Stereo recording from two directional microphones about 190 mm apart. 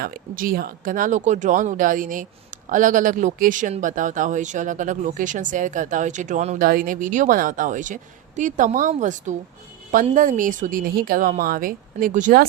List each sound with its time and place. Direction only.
0.0 s a woman's voice: 50° right (ahead or behind)